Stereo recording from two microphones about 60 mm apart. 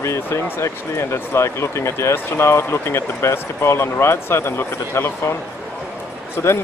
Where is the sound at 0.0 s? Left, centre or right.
Left.